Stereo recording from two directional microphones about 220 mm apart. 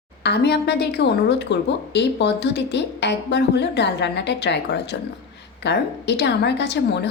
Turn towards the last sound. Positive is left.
turn(degrees=50)  # may be behind; listen again after turning